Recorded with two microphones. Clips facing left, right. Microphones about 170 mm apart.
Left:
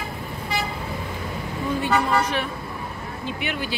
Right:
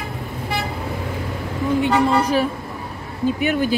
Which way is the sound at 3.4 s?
45° right (ahead or behind).